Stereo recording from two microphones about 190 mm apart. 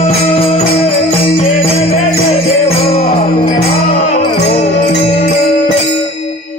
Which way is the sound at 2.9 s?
35° left (ahead or behind).